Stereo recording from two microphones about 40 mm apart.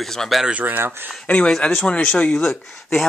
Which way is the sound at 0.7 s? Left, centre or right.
Right.